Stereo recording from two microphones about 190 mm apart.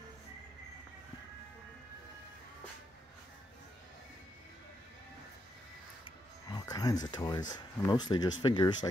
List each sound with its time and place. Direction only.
6.0 s speech: 20° left (ahead or behind)